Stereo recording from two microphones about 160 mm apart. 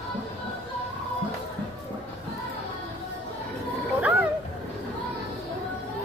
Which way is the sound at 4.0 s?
10° right (ahead or behind).